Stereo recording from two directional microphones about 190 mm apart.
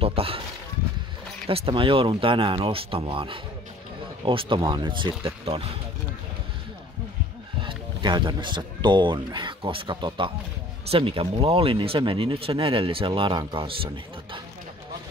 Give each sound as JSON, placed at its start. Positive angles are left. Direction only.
{"t": 0.0, "sound": "speech", "side_deg": -30}
{"t": 1.5, "sound": "speech", "side_deg": -30}
{"t": 7.6, "sound": "speech", "side_deg": -25}